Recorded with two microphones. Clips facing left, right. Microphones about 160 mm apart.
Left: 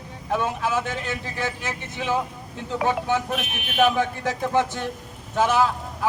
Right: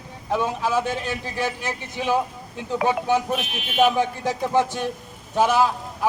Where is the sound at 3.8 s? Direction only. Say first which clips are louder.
Right 1 dB; 15° right (ahead or behind).